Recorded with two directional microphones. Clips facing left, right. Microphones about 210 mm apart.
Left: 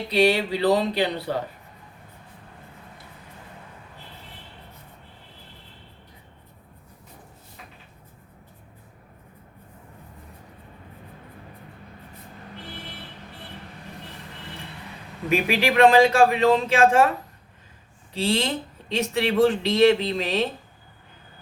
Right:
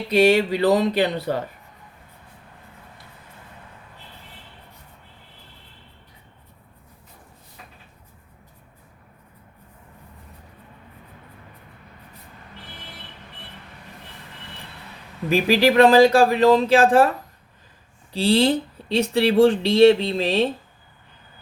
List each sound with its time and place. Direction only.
0.1 s a sound: 45° right (ahead or behind)
15.3 s speech: 35° right (ahead or behind)
18.1 s speech: 35° right (ahead or behind)